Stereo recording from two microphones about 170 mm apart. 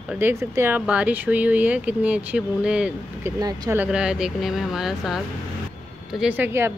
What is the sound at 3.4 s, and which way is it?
Speech, 25° right (ahead or behind).